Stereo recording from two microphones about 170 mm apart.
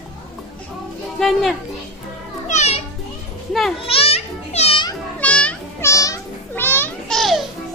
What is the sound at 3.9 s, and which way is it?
Children playing, 35° left (ahead or behind).